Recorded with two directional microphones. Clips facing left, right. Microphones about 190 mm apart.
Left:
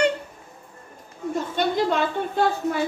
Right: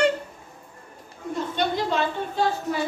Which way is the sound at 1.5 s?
55° left (ahead or behind).